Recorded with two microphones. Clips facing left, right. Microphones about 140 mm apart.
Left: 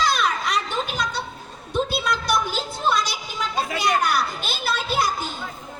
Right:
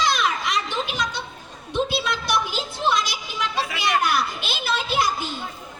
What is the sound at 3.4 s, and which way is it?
Children playing, 40° left (ahead or behind).